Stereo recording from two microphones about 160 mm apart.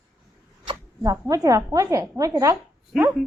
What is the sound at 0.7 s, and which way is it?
Speech, 20° right (ahead or behind).